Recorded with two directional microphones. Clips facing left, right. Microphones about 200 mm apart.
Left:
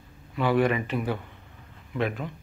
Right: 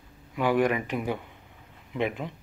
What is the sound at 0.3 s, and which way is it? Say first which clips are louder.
Speech: left 1 dB; 10° right (ahead or behind).